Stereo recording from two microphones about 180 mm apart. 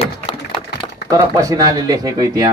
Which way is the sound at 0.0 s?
35° left (ahead or behind).